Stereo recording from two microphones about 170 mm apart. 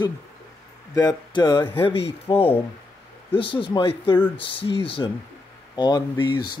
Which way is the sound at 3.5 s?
30° left (ahead or behind).